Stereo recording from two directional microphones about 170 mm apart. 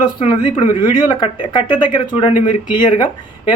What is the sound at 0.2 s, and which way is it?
Speech, 30° left (ahead or behind).